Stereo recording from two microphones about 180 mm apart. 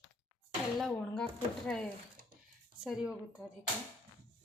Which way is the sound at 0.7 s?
Centre (ahead or behind).